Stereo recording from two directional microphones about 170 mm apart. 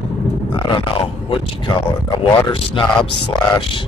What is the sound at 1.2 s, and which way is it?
Speech, 25° left (ahead or behind).